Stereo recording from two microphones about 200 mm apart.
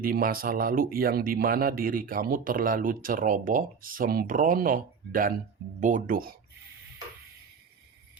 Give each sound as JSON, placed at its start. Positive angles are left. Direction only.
{"t": 0.0, "sound": "speech", "side_deg": -45}